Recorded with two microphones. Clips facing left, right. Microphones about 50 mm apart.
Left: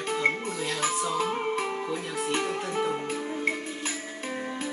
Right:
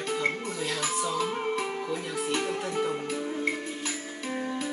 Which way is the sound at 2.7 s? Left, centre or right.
Centre.